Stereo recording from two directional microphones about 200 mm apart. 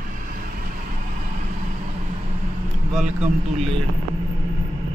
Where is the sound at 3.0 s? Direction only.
35° right (ahead or behind).